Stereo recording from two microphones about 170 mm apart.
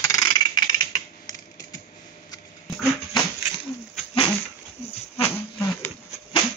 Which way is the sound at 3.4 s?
10° right (ahead or behind).